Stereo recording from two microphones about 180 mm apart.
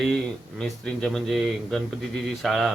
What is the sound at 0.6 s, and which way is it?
Speech, 5° left (ahead or behind).